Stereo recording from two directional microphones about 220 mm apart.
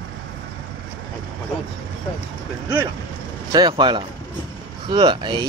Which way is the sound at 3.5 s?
20° right (ahead or behind).